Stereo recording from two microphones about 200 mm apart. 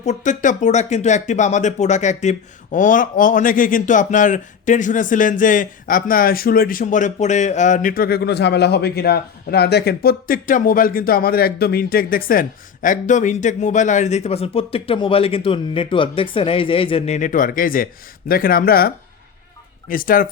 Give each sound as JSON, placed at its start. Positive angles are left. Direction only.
{"t": 0.0, "sound": "speech", "side_deg": 35}